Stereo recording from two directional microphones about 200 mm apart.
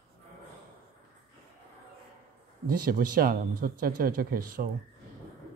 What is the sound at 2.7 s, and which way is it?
Speech, 45° right (ahead or behind).